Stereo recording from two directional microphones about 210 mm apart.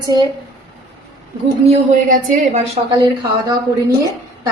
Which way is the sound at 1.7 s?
35° right (ahead or behind).